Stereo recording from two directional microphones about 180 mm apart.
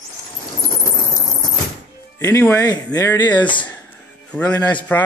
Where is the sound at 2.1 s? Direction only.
15° left (ahead or behind).